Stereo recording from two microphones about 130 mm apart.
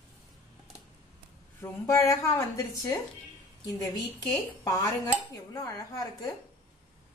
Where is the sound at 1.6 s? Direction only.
25° left (ahead or behind).